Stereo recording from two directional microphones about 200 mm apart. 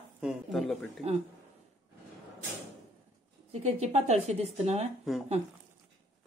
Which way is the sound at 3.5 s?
35° right (ahead or behind).